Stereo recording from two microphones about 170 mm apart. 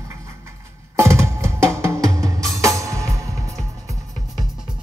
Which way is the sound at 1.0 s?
15° right (ahead or behind).